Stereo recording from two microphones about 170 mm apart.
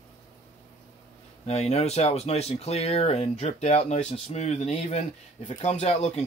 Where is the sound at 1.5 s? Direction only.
40° left (ahead or behind).